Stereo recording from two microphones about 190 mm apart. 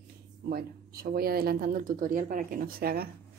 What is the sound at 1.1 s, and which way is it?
Speech, 55° right (ahead or behind).